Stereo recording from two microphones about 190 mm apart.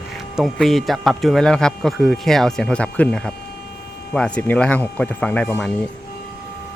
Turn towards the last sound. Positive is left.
turn(degrees=10)  # may be behind; listen again after turning